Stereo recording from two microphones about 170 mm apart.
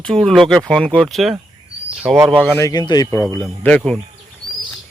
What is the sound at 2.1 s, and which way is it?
Speech, 15° right (ahead or behind).